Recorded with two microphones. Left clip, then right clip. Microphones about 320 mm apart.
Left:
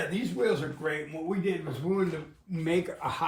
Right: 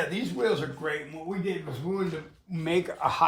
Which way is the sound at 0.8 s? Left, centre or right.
Centre.